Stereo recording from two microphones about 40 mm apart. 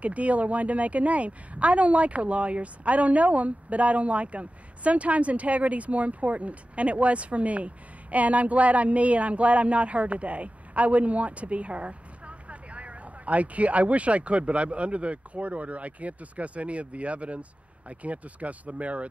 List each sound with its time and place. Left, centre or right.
0.0 s a woman's voice: right